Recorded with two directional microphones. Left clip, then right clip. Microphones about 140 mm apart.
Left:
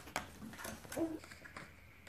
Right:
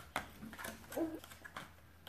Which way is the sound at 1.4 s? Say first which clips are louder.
Right 2 dB; 20° right (ahead or behind).